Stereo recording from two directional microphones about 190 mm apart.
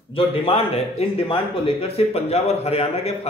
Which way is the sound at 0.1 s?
30° left (ahead or behind).